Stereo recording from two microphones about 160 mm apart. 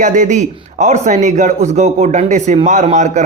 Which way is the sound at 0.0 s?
50° right (ahead or behind).